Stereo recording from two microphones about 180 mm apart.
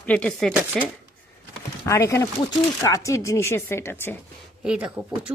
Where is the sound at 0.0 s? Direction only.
5° left (ahead or behind).